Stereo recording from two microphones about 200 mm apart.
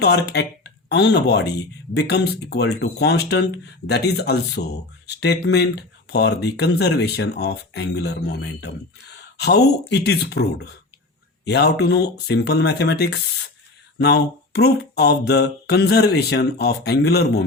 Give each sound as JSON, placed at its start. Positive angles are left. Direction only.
{"t": 0.0, "sound": "speech", "side_deg": 55}